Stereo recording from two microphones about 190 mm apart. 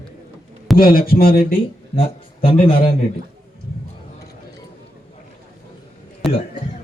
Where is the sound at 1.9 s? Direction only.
30° left (ahead or behind).